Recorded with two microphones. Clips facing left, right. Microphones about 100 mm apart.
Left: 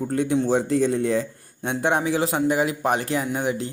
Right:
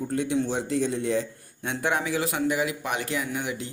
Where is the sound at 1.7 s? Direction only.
25° left (ahead or behind).